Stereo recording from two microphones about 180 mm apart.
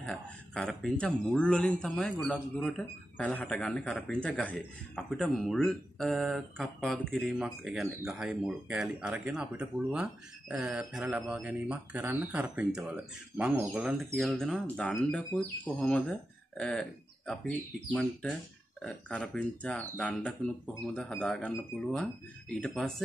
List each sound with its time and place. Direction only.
0.0 s a man's voice: 5° left (ahead or behind)